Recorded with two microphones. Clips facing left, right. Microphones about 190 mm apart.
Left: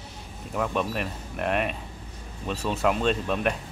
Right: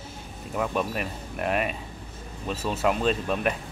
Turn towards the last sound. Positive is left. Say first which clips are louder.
# even
turn(degrees=0)  # may be behind; listen again after turning